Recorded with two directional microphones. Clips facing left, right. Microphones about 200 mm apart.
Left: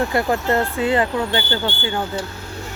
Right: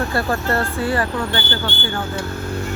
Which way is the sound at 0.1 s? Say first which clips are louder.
Left 2 dB; 20° left (ahead or behind).